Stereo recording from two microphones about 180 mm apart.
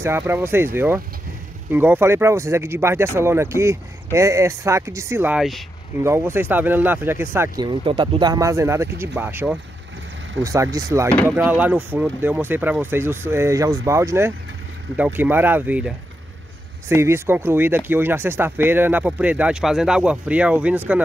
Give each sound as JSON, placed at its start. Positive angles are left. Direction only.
{"t": 0.0, "sound": "speech", "side_deg": -15}
{"t": 16.9, "sound": "speech", "side_deg": -15}